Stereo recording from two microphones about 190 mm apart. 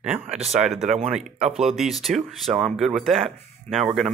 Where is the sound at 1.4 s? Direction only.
35° right (ahead or behind).